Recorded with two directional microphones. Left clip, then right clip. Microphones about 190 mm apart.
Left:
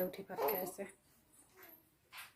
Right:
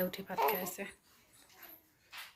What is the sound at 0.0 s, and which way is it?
Speech, 5° left (ahead or behind).